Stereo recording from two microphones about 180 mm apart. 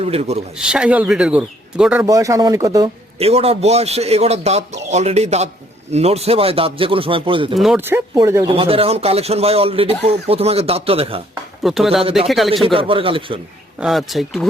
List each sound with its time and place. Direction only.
0.0 s speech: 35° right (ahead or behind)
0.5 s speech: 5° right (ahead or behind)
2.0 s speech: 20° right (ahead or behind)
3.2 s speech: 35° right (ahead or behind)
7.5 s speech: centre (ahead or behind)
8.4 s speech: 30° right (ahead or behind)
11.6 s speech: centre (ahead or behind)
12.6 s speech: 30° right (ahead or behind)
13.7 s speech: centre (ahead or behind)